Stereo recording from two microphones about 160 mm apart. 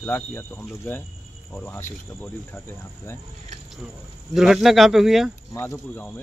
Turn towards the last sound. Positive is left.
turn(degrees=15)  # may be behind; listen again after turning